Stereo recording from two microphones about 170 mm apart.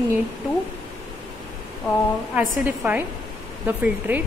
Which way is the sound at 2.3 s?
10° right (ahead or behind).